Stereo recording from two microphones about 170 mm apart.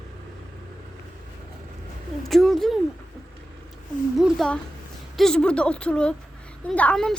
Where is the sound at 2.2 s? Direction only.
Centre (ahead or behind).